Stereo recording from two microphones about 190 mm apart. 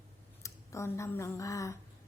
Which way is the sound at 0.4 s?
15° left (ahead or behind).